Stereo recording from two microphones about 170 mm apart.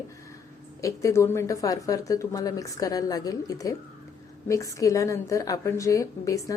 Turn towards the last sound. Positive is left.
turn(degrees=20)  # may be behind; listen again after turning